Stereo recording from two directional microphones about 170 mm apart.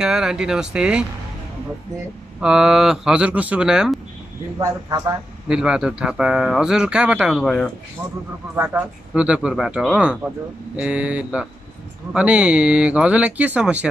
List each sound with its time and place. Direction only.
0.0 s speech: 5° right (ahead or behind)
2.4 s speech: 5° right (ahead or behind)
4.6 s speech: 20° right (ahead or behind)
5.5 s speech: 5° right (ahead or behind)
8.5 s speech: 10° right (ahead or behind)